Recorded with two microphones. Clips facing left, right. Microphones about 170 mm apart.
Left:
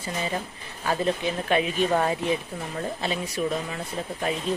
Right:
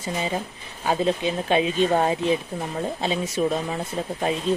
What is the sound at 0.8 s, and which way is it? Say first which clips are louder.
Speech: right 3 dB; 20° right (ahead or behind).